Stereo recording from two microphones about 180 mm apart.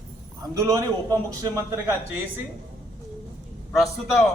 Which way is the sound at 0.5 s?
20° right (ahead or behind).